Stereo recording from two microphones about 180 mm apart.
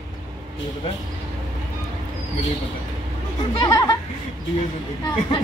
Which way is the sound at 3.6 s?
25° left (ahead or behind).